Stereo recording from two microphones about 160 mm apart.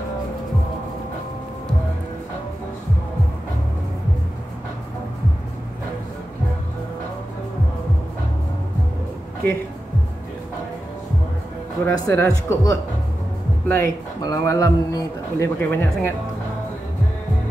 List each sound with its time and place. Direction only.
11.8 s a man's voice: 20° left (ahead or behind)